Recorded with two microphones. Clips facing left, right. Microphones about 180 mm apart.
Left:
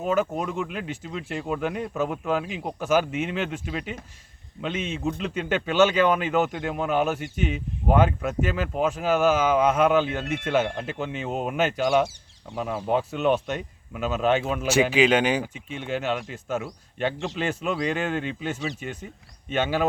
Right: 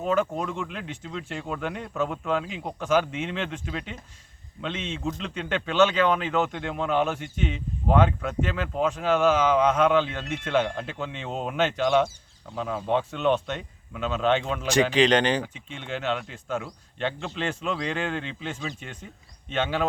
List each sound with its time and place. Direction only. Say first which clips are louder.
0.0 s speech: left 1 dB; 5° left (ahead or behind)